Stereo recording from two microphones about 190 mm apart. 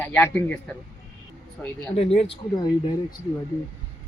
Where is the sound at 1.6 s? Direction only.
10° left (ahead or behind).